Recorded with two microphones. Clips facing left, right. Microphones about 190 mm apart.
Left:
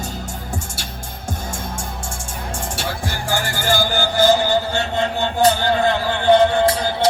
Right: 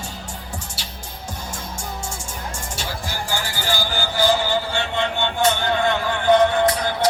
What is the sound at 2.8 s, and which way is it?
Music, 55° left (ahead or behind).